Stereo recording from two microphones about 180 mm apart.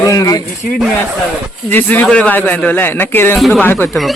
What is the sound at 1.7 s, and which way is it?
Speech, 10° left (ahead or behind).